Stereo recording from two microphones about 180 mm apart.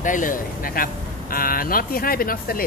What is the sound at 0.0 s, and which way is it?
Speech, 45° left (ahead or behind).